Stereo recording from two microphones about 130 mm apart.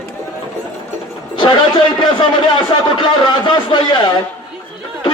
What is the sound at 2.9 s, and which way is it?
A man's voice, 35° left (ahead or behind).